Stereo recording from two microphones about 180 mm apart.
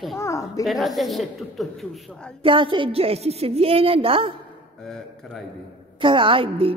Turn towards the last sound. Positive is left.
turn(degrees=-30)  # may be behind; listen again after turning